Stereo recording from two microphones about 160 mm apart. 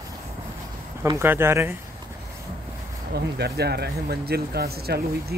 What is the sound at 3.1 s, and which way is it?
Speech, 90° right.